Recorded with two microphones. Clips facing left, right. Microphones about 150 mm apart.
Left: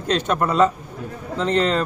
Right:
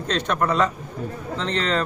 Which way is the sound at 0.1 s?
10° left (ahead or behind).